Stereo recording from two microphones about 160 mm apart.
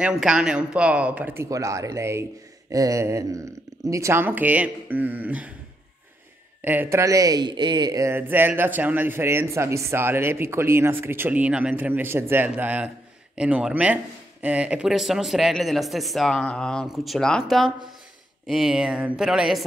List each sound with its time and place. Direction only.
0.0 s speech: 5° right (ahead or behind)
2.7 s a sound: 20° right (ahead or behind)
3.8 s speech: 20° right (ahead or behind)
6.6 s speech: 10° right (ahead or behind)